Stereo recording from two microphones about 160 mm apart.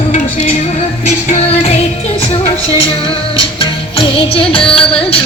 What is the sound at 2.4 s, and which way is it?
Music, 35° left (ahead or behind).